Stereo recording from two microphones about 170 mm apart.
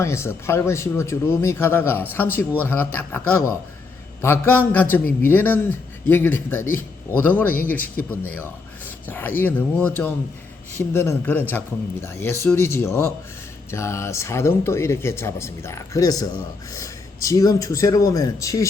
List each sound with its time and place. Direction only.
0.0 s speech: 15° left (ahead or behind)
9.0 s speech: 10° left (ahead or behind)